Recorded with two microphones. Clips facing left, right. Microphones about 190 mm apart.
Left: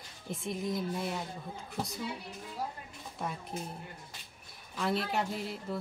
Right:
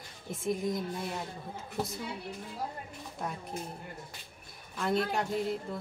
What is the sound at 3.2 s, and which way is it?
Speech, centre (ahead or behind).